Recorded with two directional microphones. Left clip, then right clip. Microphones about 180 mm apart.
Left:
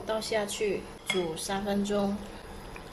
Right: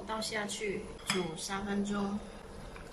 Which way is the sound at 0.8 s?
Centre (ahead or behind).